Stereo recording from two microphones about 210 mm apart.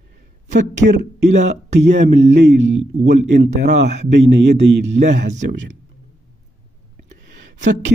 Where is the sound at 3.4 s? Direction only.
35° right (ahead or behind).